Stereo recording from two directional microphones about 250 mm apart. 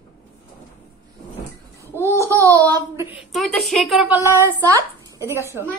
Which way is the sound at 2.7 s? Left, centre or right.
Centre.